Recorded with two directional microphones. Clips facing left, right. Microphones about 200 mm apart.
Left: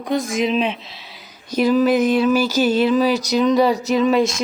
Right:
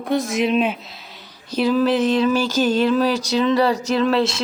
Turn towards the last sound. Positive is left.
turn(degrees=10)  # may be behind; listen again after turning